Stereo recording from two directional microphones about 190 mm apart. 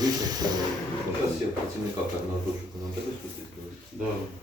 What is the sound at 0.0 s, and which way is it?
Hiss, 20° right (ahead or behind).